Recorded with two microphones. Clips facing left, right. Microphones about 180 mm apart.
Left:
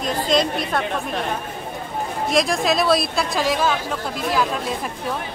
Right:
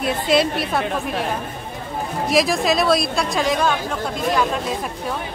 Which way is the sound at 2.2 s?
Centre (ahead or behind).